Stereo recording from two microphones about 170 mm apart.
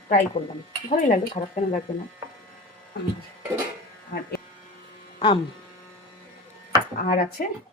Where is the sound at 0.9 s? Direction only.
50° left (ahead or behind).